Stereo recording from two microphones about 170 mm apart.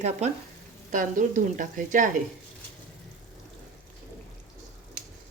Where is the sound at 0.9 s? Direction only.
50° right (ahead or behind).